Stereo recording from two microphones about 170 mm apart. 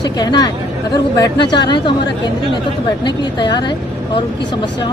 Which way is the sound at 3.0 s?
25° left (ahead or behind).